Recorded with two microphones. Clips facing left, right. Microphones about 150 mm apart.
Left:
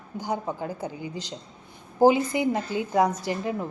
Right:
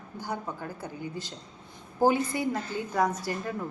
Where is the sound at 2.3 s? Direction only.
20° left (ahead or behind).